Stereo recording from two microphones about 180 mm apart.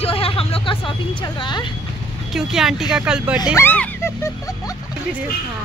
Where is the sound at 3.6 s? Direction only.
15° left (ahead or behind).